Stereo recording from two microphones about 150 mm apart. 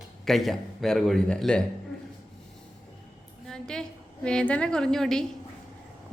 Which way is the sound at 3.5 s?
5° left (ahead or behind).